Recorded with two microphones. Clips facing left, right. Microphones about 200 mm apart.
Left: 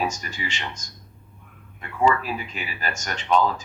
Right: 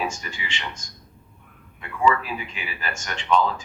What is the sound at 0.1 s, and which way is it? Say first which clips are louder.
Speech: left 2 dB; 40° left (ahead or behind).